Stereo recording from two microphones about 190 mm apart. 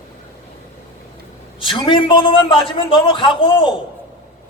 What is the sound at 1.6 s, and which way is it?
A man's voice, 25° left (ahead or behind).